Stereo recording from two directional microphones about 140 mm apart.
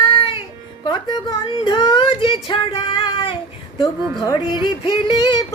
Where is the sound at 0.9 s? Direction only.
30° left (ahead or behind).